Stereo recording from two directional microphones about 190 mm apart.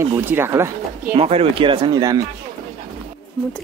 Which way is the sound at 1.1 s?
30° right (ahead or behind).